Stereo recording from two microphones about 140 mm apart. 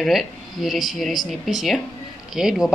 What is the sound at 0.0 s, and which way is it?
Speech, centre (ahead or behind).